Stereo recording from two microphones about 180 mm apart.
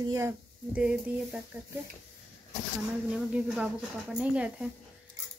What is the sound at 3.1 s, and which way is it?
Speech, 5° right (ahead or behind).